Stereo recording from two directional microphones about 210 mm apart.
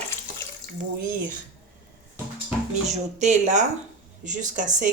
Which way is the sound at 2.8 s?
35° right (ahead or behind).